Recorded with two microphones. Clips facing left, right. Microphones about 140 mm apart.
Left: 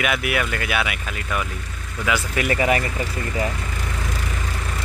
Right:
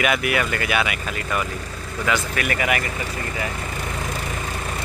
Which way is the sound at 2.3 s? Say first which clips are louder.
Left 3 dB; 25° left (ahead or behind).